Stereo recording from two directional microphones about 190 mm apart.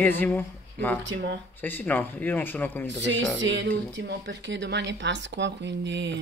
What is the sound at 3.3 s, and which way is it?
Speech, 75° right (ahead or behind).